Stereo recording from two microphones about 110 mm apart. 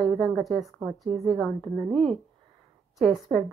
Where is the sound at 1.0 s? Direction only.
60° right (ahead or behind).